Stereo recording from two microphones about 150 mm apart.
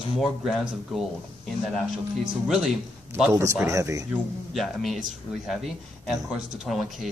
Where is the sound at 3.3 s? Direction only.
20° right (ahead or behind).